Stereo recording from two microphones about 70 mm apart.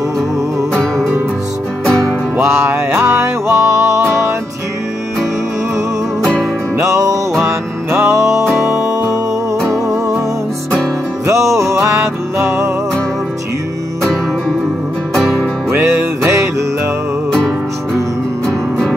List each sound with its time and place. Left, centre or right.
0.7 s music: centre
2.4 s music: right
6.8 s music: right
9.6 s music: right
11.2 s music: right
15.7 s music: right